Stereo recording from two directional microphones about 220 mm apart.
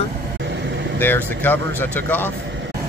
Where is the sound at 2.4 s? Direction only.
55° right (ahead or behind).